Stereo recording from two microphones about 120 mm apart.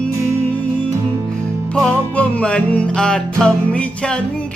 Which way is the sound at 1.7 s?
10° left (ahead or behind).